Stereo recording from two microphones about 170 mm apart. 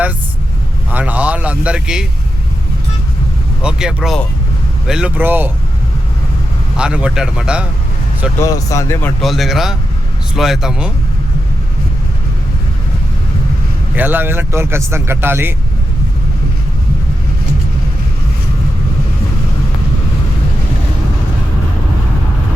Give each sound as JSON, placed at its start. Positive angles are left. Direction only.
{"t": 0.9, "sound": "a sound", "side_deg": -10}
{"t": 3.6, "sound": "a man's voice", "side_deg": -5}
{"t": 6.7, "sound": "a man's voice", "side_deg": -5}
{"t": 8.4, "sound": "speech", "side_deg": 20}
{"t": 9.2, "sound": "a man's voice", "side_deg": 0}
{"t": 13.9, "sound": "speech", "side_deg": -10}